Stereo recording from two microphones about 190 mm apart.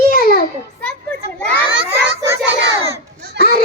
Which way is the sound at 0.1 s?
50° left (ahead or behind).